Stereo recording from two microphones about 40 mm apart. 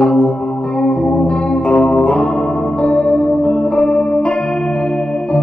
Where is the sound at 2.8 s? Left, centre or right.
Left.